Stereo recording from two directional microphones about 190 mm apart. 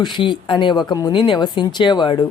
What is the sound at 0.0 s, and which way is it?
Speech, 25° left (ahead or behind).